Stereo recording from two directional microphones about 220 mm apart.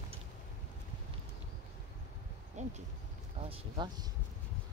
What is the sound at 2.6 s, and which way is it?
Insect, 30° right (ahead or behind).